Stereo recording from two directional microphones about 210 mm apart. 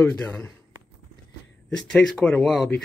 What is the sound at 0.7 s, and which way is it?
Walk, 80° right.